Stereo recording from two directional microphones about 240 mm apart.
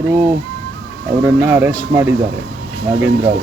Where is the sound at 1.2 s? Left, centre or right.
Centre.